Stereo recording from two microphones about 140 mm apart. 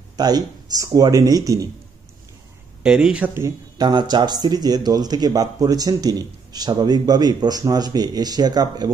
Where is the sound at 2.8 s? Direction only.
5° right (ahead or behind).